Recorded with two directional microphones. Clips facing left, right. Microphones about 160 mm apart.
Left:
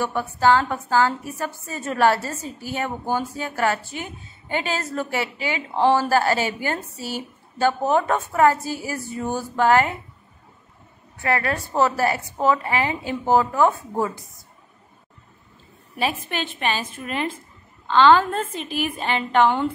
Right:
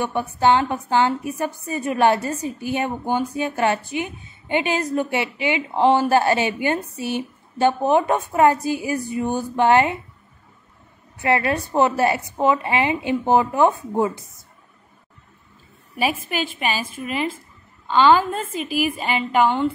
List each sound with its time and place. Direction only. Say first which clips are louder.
0.0 s a woman's voice: right 1 dB; 20° right (ahead or behind)
11.1 s a woman's voice: right 3 dB; 20° right (ahead or behind)
16.5 s a woman's voice: right 1 dB; 5° right (ahead or behind)